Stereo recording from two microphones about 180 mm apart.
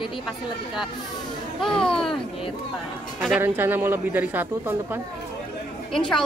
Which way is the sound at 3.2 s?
5° right (ahead or behind).